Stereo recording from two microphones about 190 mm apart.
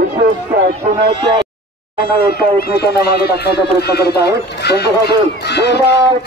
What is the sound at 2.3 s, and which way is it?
Speech, 55° left (ahead or behind).